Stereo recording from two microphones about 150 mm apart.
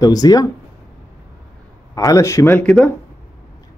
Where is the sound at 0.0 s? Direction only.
25° left (ahead or behind).